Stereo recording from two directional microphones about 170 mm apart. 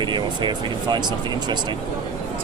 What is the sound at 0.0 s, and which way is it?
Speech, 25° right (ahead or behind).